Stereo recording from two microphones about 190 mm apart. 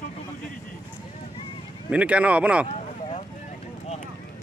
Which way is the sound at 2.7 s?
35° left (ahead or behind).